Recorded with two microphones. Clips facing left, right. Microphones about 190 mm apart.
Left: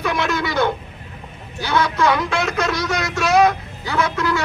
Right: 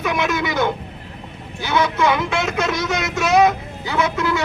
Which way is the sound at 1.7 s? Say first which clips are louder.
Even; 20° right (ahead or behind).